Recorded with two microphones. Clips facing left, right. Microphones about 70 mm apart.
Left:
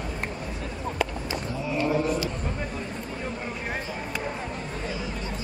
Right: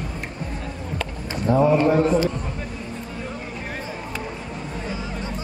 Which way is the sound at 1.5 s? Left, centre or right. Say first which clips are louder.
Right 10 dB; right.